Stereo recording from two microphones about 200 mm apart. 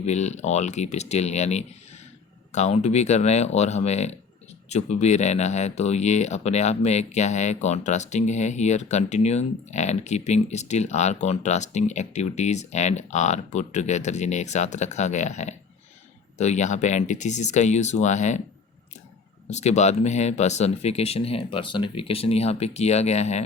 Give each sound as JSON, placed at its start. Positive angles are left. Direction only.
{"t": 0.0, "sound": "speech", "side_deg": 35}
{"t": 19.5, "sound": "speech", "side_deg": 35}